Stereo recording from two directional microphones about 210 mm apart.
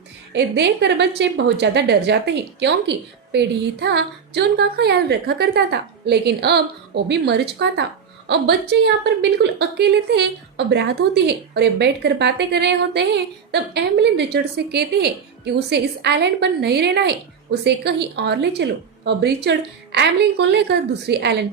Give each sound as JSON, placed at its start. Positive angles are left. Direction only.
{"t": 0.3, "sound": "a woman's voice", "side_deg": -55}